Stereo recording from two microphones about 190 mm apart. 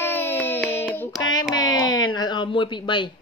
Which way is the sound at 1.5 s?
20° left (ahead or behind).